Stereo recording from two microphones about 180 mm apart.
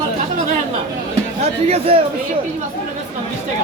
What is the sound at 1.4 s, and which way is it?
Speech, 35° right (ahead or behind).